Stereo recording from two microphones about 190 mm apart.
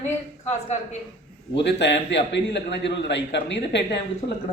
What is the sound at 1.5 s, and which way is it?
A man's voice, 65° left (ahead or behind).